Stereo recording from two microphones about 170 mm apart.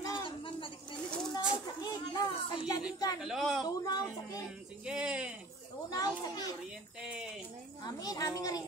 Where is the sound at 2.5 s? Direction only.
25° left (ahead or behind).